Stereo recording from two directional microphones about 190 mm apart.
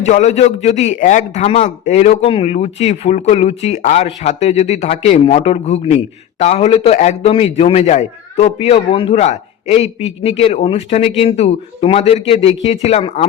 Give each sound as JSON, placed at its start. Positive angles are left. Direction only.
{"t": 0.0, "sound": "a man's voice", "side_deg": 40}